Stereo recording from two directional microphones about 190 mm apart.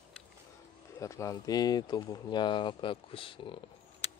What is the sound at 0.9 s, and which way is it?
Speech, 15° left (ahead or behind).